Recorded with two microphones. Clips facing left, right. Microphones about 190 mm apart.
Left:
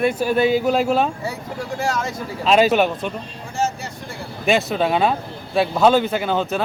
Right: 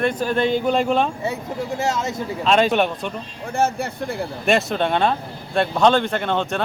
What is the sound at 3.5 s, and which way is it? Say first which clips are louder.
Speech: right 3 dB; 55° right (ahead or behind).